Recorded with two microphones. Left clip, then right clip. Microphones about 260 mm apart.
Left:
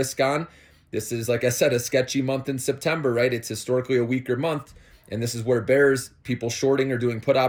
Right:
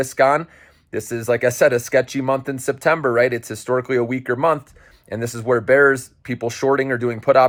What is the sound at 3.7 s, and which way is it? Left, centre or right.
Speech, right.